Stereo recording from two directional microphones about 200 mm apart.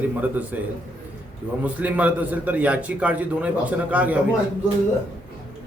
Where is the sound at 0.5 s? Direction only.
10° right (ahead or behind).